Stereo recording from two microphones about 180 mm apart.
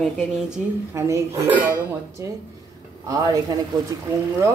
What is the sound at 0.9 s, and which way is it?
Speech, 15° right (ahead or behind).